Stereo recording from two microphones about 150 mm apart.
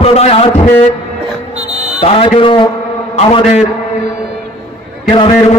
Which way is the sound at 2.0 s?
35° left (ahead or behind).